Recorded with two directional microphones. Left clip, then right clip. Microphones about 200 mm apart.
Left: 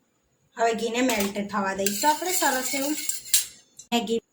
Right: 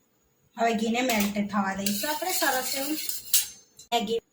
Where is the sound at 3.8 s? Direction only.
20° left (ahead or behind).